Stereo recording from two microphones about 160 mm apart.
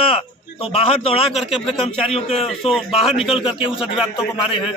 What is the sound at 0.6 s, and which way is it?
Speech, 40° left (ahead or behind).